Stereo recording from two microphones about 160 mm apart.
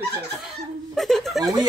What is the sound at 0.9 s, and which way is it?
Speech, centre (ahead or behind).